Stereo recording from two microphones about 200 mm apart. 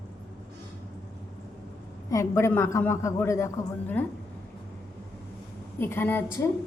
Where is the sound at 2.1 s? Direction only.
15° left (ahead or behind).